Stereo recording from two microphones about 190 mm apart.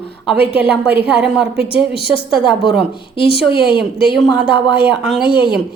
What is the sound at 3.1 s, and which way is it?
A woman's voice, 30° left (ahead or behind).